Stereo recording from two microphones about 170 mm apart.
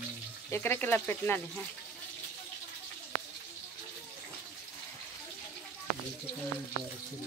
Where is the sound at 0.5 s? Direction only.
10° left (ahead or behind).